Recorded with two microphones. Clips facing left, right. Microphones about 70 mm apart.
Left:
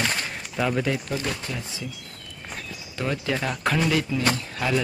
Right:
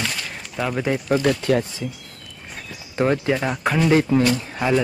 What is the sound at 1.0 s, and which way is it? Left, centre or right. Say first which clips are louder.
Speech: right 11 dB; right.